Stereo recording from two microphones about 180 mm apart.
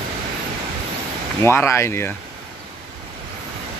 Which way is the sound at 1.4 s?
15° left (ahead or behind).